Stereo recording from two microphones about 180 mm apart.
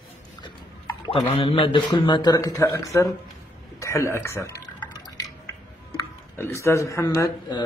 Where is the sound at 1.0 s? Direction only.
35° left (ahead or behind); by 3.1 s 15° left (ahead or behind).